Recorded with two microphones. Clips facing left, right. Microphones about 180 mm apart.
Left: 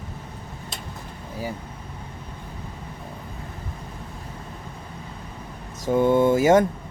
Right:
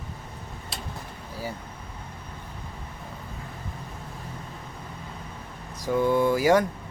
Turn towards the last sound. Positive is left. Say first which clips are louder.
# left 4 dB
turn(degrees=25)  # may be behind; listen again after turning